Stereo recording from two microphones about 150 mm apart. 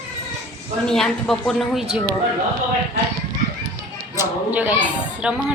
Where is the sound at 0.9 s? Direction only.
5° left (ahead or behind).